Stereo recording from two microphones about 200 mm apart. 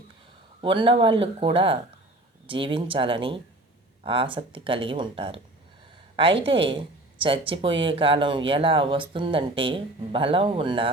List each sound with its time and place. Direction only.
0.6 s speech: 25° right (ahead or behind)
6.5 s speech: 25° right (ahead or behind)